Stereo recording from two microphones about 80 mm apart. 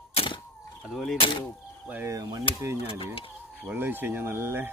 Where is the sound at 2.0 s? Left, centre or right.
Right.